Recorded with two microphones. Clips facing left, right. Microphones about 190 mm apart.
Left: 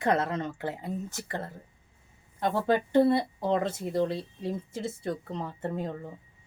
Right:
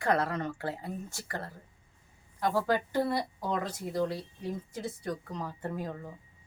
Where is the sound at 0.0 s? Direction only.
20° left (ahead or behind).